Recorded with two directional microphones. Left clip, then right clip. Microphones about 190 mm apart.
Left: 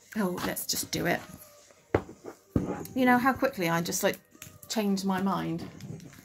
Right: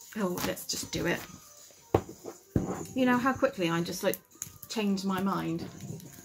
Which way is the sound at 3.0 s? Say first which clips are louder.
Left 2 dB; 45° left (ahead or behind).